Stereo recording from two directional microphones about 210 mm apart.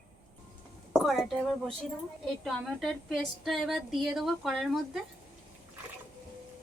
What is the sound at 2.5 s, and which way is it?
A woman's voice, centre (ahead or behind).